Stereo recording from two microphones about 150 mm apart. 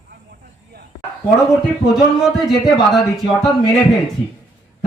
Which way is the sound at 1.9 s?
5° right (ahead or behind).